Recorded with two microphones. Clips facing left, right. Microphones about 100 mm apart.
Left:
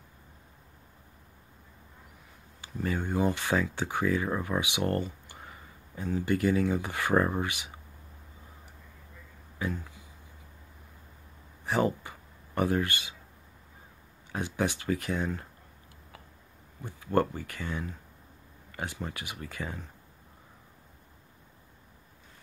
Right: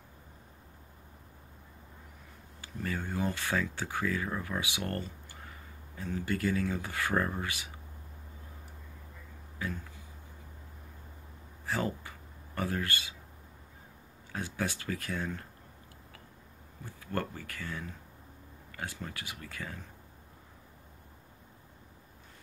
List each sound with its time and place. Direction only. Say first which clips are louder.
2.6 s speech: left 5 dB; 20° left (ahead or behind)
11.6 s speech: left 6 dB; 25° left (ahead or behind)
14.3 s speech: left 5 dB; 20° left (ahead or behind)
16.8 s speech: left 9 dB; 20° left (ahead or behind)